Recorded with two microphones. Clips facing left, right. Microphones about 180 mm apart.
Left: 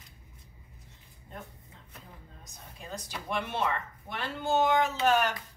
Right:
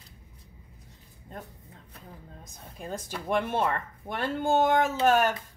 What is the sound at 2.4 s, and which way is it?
A woman's voice, 50° right (ahead or behind).